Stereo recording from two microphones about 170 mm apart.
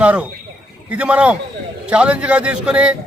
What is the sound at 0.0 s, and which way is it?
A man's voice, 10° right (ahead or behind).